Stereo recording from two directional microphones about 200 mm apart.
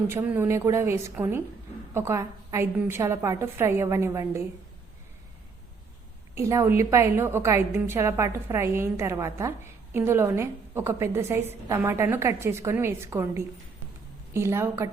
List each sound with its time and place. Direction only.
0.1 s a woman's voice: 10° right (ahead or behind)
6.3 s a woman's voice: 15° right (ahead or behind)